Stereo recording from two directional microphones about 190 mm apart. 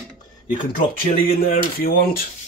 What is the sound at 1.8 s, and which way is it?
Speech, 50° left (ahead or behind).